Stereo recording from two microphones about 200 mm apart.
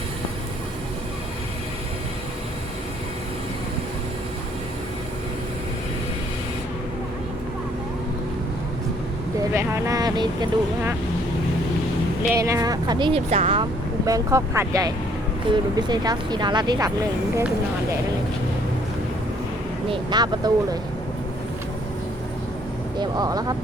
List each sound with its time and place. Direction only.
9.5 s speech: 15° right (ahead or behind)
12.3 s speech: 15° right (ahead or behind)
14.0 s speech: 15° right (ahead or behind)
19.9 s speech: 20° right (ahead or behind)
23.0 s speech: 20° right (ahead or behind)